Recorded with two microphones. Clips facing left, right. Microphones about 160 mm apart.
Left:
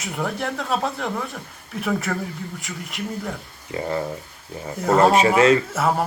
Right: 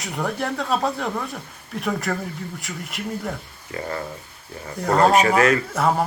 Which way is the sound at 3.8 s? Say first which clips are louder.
Left 4 dB; 20° left (ahead or behind).